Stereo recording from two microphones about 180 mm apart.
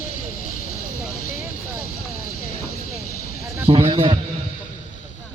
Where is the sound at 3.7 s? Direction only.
30° right (ahead or behind).